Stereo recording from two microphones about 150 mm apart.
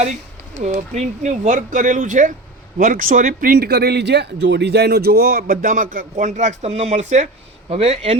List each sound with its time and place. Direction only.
0.6 s speech: 50° right (ahead or behind)